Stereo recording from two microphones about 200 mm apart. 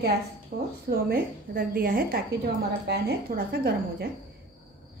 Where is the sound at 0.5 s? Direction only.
50° right (ahead or behind).